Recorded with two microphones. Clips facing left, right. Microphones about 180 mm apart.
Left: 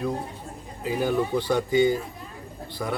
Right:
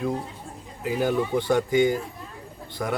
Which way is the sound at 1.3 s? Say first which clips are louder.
Right 1 dB; 20° right (ahead or behind).